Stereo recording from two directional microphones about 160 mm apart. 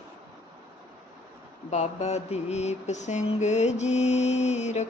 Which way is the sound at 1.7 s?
45° left (ahead or behind).